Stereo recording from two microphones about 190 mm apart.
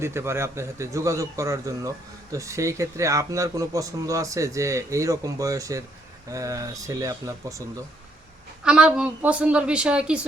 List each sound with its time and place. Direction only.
0.0 s speech: 15° right (ahead or behind)
8.6 s a woman's voice: 5° right (ahead or behind)